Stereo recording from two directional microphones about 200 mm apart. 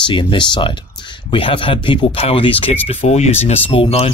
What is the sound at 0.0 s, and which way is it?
Speech, 25° left (ahead or behind).